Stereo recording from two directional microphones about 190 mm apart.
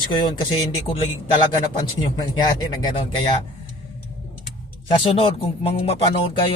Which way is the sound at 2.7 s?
25° left (ahead or behind).